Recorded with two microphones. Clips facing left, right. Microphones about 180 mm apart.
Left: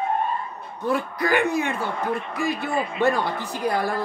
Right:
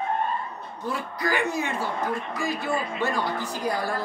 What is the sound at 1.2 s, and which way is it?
Speech, 60° left (ahead or behind).